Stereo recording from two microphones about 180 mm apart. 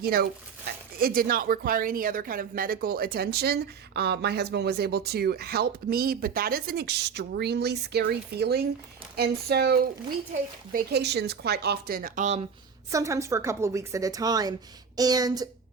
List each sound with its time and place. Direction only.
0.0 s speech: 60° right (ahead or behind)
12.9 s a woman's voice: 15° right (ahead or behind)